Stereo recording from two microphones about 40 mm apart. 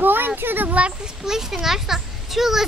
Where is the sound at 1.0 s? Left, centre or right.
Centre.